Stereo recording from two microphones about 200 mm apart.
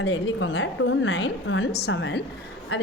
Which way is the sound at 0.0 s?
75° left (ahead or behind).